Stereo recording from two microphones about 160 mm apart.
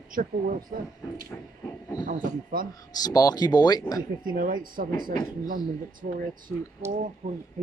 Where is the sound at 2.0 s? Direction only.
65° right (ahead or behind).